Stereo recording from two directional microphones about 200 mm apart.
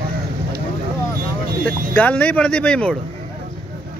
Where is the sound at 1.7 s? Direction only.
10° left (ahead or behind).